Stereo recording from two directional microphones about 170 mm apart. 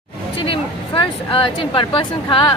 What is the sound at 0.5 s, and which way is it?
Speech, 30° left (ahead or behind).